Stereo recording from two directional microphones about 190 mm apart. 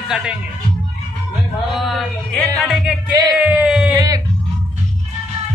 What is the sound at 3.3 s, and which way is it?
Speech, 5° right (ahead or behind).